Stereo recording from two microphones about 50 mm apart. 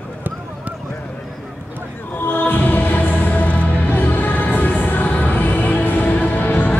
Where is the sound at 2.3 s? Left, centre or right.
Left.